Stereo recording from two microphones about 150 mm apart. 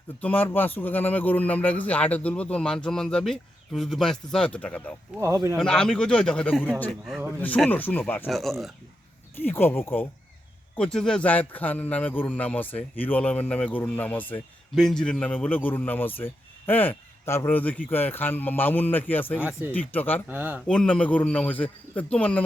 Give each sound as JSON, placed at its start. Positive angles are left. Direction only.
{"t": 0.2, "sound": "a man's voice", "side_deg": 10}
{"t": 5.1, "sound": "speech", "side_deg": -20}
{"t": 5.5, "sound": "a man's voice", "side_deg": 5}
{"t": 7.0, "sound": "a man's voice", "side_deg": 0}
{"t": 7.3, "sound": "a man's voice", "side_deg": 10}
{"t": 8.3, "sound": "a man's voice", "side_deg": 0}
{"t": 9.3, "sound": "a man's voice", "side_deg": 15}
{"t": 20.2, "sound": "speech", "side_deg": -10}
{"t": 20.7, "sound": "a man's voice", "side_deg": 5}